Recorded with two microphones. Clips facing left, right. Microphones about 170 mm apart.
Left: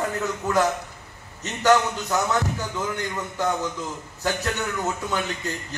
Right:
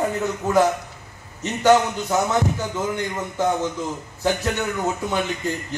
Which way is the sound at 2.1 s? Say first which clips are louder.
Right 3 dB; 25° right (ahead or behind).